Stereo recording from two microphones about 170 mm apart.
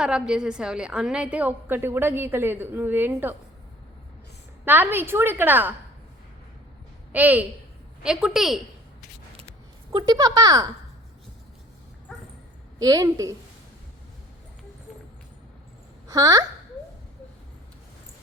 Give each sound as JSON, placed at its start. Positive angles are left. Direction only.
{"t": 0.0, "sound": "a woman's voice", "side_deg": -5}
{"t": 4.6, "sound": "a woman's voice", "side_deg": -10}
{"t": 7.1, "sound": "a woman's voice", "side_deg": -10}
{"t": 9.9, "sound": "speech", "side_deg": -25}
{"t": 12.8, "sound": "speech", "side_deg": -20}
{"t": 16.0, "sound": "a woman's voice", "side_deg": -20}